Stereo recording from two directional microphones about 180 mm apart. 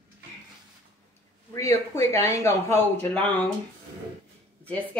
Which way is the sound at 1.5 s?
15° left (ahead or behind).